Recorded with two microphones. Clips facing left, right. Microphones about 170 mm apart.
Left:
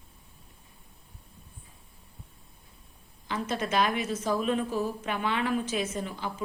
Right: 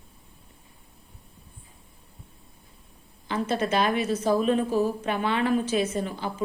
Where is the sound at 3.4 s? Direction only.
35° right (ahead or behind).